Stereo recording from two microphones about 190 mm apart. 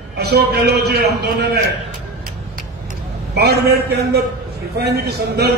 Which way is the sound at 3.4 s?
60° right (ahead or behind).